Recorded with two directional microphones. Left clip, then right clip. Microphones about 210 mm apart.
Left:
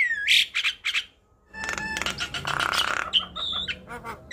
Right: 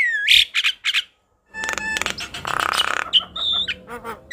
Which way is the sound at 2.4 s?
25° right (ahead or behind).